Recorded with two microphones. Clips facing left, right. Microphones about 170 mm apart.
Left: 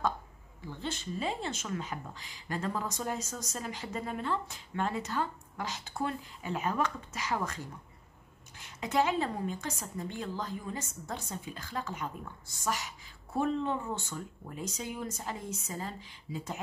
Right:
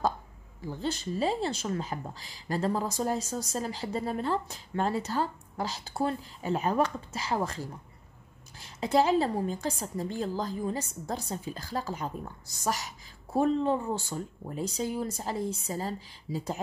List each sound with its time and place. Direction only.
0.6 s a woman's voice: 40° right (ahead or behind)